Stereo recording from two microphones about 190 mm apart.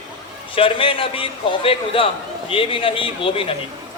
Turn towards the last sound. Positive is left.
turn(degrees=30)  # may be behind; listen again after turning